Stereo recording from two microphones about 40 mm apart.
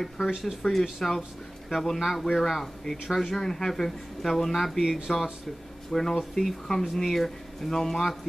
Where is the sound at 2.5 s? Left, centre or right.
Centre.